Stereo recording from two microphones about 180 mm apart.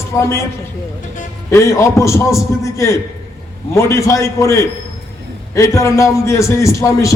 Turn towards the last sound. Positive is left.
turn(degrees=15)  # may be behind; listen again after turning